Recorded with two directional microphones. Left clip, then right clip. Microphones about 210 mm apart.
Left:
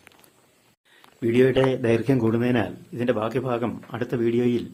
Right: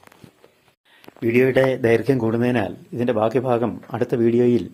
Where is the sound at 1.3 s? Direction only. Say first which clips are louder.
Right 3 dB; 15° right (ahead or behind).